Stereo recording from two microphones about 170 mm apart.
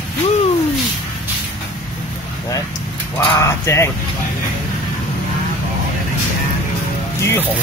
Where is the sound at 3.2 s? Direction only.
15° left (ahead or behind).